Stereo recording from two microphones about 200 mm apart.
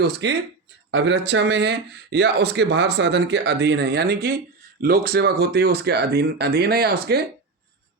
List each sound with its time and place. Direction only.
0.0 s speech: 65° right (ahead or behind)